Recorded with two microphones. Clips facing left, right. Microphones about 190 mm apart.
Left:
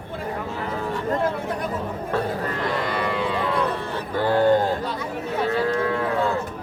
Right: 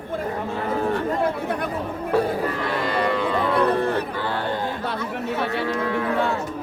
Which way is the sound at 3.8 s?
60° right (ahead or behind).